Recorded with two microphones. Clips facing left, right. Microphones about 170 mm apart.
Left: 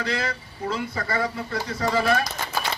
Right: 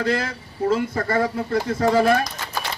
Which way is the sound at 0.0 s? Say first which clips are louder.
Right 5 dB; 50° right (ahead or behind).